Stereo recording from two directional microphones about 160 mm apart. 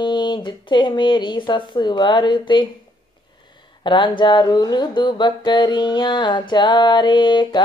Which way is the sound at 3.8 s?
30° left (ahead or behind).